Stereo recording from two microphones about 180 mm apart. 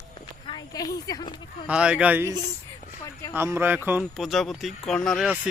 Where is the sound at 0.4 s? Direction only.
25° left (ahead or behind).